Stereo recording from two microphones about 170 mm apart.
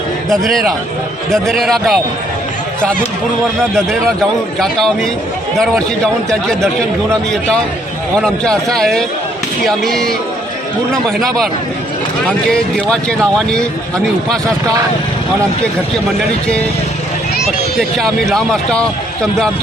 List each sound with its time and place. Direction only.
0.3 s speech: centre (ahead or behind)
3.6 s speech: 5° left (ahead or behind)
8.2 s speech: 5° left (ahead or behind)
12.5 s speech: 5° left (ahead or behind)
17.7 s speech: centre (ahead or behind)